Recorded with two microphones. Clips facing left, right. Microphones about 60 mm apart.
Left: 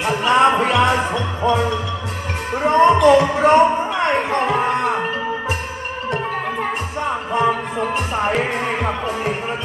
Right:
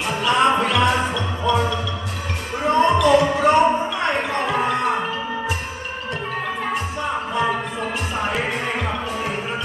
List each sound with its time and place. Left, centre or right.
0.0 s music: left
2.6 s a sound: left
7.3 s music: left